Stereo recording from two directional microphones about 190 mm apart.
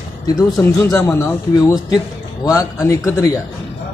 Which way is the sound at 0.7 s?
20° left (ahead or behind).